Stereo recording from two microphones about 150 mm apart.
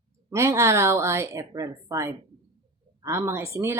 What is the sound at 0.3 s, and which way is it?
Speech, 20° right (ahead or behind).